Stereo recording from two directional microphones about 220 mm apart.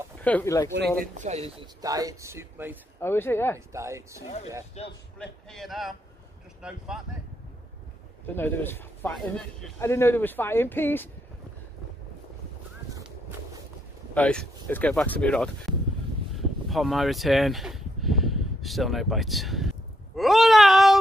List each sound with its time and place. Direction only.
0.2 s a man's voice: 10° left (ahead or behind)
1.1 s speech: 30° right (ahead or behind)
1.8 s speech: 15° right (ahead or behind)
3.0 s a man's voice: 10° left (ahead or behind)
3.5 s speech: 15° right (ahead or behind)
4.8 s speech: 30° left (ahead or behind)
5.2 s speech: centre (ahead or behind)
8.4 s a man's voice: 10° left (ahead or behind)
14.1 s speech: 5° left (ahead or behind)